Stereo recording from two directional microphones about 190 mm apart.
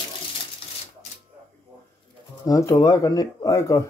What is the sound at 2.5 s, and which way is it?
Speech, 20° left (ahead or behind).